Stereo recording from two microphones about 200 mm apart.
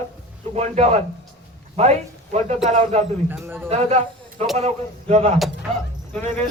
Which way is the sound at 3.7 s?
35° right (ahead or behind).